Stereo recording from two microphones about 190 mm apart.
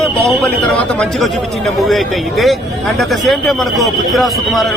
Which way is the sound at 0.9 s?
Centre (ahead or behind).